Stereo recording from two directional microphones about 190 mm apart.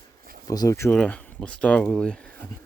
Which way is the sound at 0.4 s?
20° left (ahead or behind).